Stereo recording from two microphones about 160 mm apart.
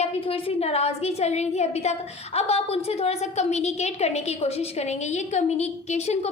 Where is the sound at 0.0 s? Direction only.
35° left (ahead or behind).